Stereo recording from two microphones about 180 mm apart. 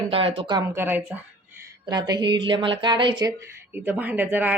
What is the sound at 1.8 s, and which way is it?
A woman's voice, 20° right (ahead or behind).